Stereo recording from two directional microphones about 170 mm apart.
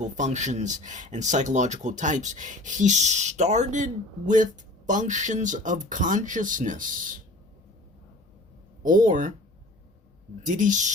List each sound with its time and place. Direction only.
0.0 s speech: 45° right (ahead or behind)
8.8 s speech: 50° right (ahead or behind)
10.4 s speech: 50° right (ahead or behind)